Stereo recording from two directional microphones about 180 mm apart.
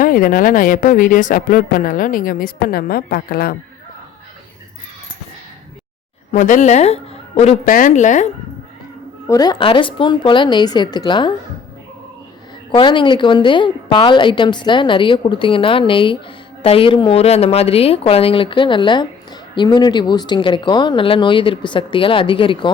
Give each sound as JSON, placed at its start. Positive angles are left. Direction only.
{"t": 0.0, "sound": "speech", "side_deg": 50}
{"t": 6.3, "sound": "speech", "side_deg": 45}
{"t": 9.2, "sound": "a woman's voice", "side_deg": 20}
{"t": 12.7, "sound": "a woman's voice", "side_deg": 25}